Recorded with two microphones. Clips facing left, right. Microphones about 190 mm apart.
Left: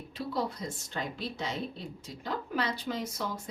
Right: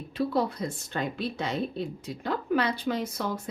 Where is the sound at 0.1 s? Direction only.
60° right (ahead or behind).